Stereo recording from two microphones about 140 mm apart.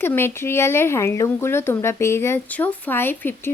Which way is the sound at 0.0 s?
15° left (ahead or behind).